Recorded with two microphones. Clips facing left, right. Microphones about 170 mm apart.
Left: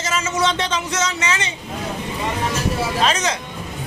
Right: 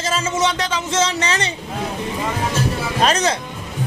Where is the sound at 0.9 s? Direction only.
30° right (ahead or behind).